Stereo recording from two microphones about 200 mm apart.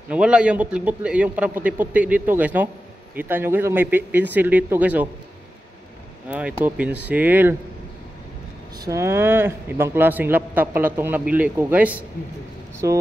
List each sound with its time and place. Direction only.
0.1 s a man's voice: 5° right (ahead or behind)
6.2 s a man's voice: 10° right (ahead or behind)
8.8 s a man's voice: 15° right (ahead or behind)